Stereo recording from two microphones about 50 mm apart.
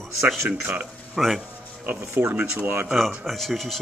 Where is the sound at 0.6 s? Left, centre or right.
Right.